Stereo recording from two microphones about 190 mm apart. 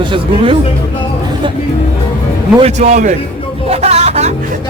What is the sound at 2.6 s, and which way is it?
Speech, 40° right (ahead or behind).